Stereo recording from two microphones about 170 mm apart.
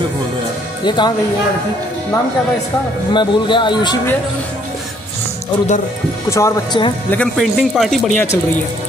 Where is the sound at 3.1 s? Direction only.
30° left (ahead or behind).